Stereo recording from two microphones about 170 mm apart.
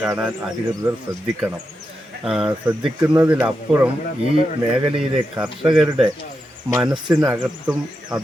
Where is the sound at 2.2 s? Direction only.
5° right (ahead or behind).